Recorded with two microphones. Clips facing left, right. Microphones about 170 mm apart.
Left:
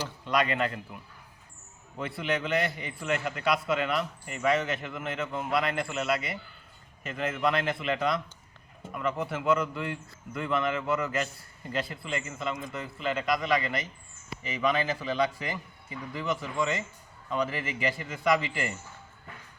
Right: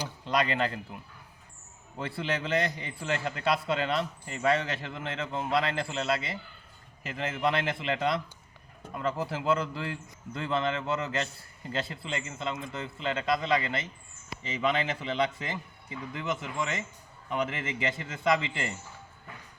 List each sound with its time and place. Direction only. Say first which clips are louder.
0.3 s a man's voice: left 1 dB; 30° right (ahead or behind)
2.1 s a man's voice: left 1 dB; 30° right (ahead or behind)